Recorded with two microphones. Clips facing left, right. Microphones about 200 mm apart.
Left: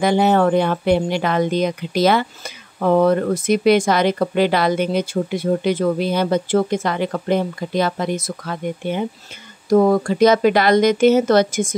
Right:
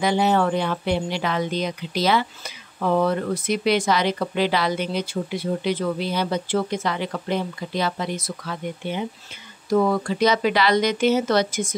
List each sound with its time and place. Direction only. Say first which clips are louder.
0.0 s speech: left 5 dB; 50° left (ahead or behind)